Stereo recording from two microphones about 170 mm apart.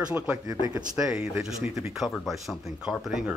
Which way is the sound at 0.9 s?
5° right (ahead or behind).